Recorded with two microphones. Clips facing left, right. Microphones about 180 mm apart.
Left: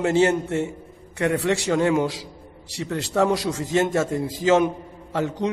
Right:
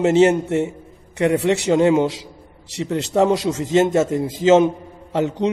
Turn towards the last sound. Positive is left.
turn(degrees=-20)  # may be behind; listen again after turning